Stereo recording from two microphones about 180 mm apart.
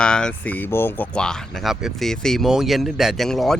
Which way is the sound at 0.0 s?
5° left (ahead or behind).